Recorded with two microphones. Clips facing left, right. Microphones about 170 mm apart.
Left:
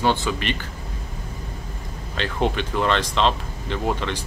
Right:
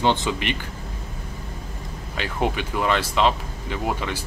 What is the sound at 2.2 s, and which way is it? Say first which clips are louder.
Speech: left 1 dB; 10° right (ahead or behind).